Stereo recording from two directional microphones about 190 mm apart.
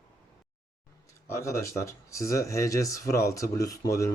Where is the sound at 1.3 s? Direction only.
15° left (ahead or behind).